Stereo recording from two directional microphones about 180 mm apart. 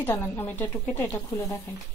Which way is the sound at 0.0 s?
10° left (ahead or behind).